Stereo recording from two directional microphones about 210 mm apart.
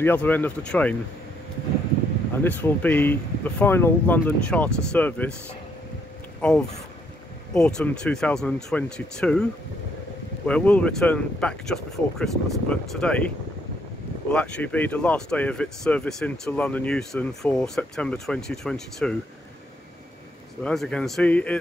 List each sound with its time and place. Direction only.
0.0 s speech: 10° left (ahead or behind)
2.4 s speech: 10° left (ahead or behind)
6.4 s speech: 5° left (ahead or behind)
14.3 s speech: 5° left (ahead or behind)
20.6 s speech: 5° left (ahead or behind)